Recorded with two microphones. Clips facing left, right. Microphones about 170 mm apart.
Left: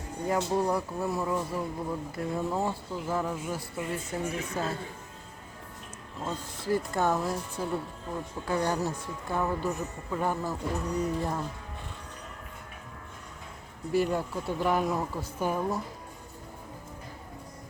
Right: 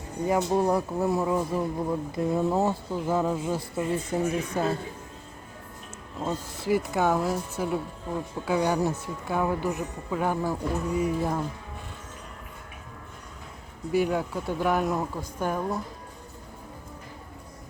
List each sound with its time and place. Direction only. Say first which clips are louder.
0.3 s speech: right 4 dB; 15° right (ahead or behind)
6.2 s speech: right 4 dB; 10° right (ahead or behind)
13.9 s speech: right 2 dB; centre (ahead or behind)